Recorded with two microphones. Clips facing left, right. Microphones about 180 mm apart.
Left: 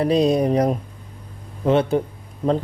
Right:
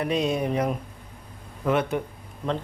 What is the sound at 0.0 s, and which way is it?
A man's voice, 35° left (ahead or behind).